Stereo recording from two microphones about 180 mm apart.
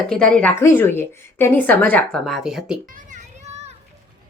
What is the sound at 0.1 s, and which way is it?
A woman's voice, 5° left (ahead or behind).